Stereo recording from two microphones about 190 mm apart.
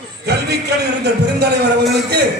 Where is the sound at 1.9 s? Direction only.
60° right (ahead or behind).